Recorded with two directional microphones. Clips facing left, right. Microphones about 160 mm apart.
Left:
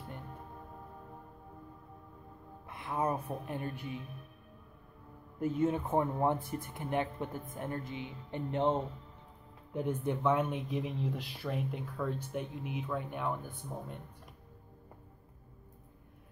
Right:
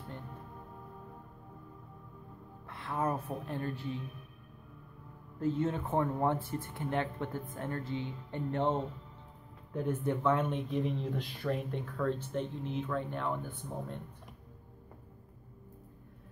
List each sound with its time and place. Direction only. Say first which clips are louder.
2.6 s speech: even; 15° left (ahead or behind)
5.4 s speech: left 1 dB; 15° left (ahead or behind)